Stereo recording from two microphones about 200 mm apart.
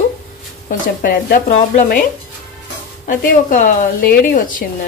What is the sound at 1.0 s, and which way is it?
A woman's voice, 45° left (ahead or behind).